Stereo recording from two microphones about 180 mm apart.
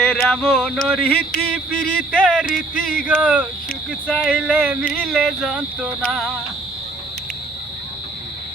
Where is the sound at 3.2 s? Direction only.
10° right (ahead or behind).